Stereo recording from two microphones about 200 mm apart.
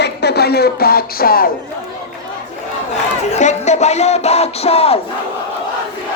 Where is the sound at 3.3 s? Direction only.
35° left (ahead or behind).